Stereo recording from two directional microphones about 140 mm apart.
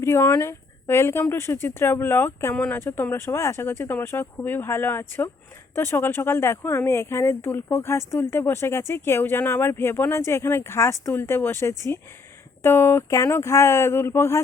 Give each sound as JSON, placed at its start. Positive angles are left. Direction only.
{"t": 0.0, "sound": "speech", "side_deg": 20}